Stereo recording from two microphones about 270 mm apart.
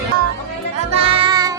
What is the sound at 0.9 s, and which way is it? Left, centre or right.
Music, centre.